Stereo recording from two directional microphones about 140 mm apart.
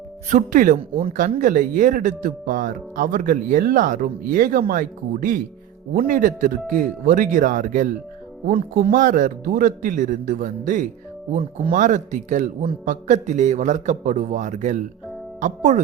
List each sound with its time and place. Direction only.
0.3 s a man's voice: 70° right (ahead or behind)